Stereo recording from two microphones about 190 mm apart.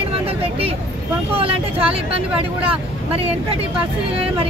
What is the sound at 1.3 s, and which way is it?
Speech, 30° right (ahead or behind).